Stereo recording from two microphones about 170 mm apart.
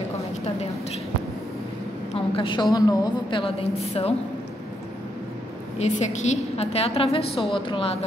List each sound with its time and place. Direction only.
2.1 s a woman's voice: 30° left (ahead or behind)
5.8 s a woman's voice: 45° left (ahead or behind)